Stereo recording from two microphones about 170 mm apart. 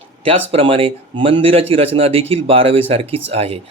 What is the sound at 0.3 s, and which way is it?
Speech, 35° right (ahead or behind).